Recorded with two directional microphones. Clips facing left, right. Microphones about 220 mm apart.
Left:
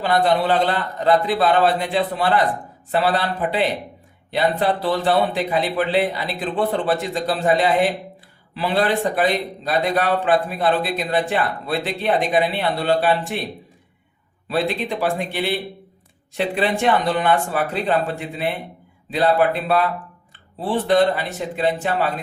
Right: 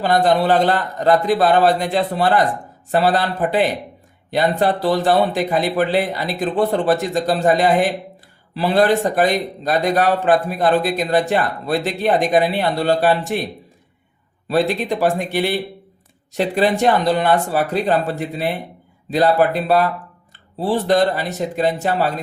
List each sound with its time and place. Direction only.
0.0 s a man's voice: 45° right (ahead or behind)
14.4 s a man's voice: 45° right (ahead or behind)
16.6 s speech: 40° right (ahead or behind)